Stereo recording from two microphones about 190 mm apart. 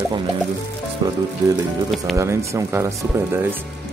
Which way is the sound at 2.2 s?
15° right (ahead or behind).